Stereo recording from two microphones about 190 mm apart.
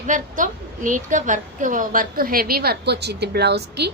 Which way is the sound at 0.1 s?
45° right (ahead or behind).